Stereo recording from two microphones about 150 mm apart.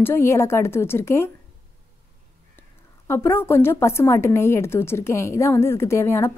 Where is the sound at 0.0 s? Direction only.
15° left (ahead or behind).